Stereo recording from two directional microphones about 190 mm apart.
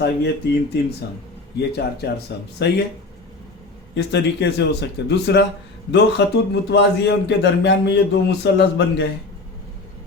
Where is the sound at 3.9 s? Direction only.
65° left (ahead or behind).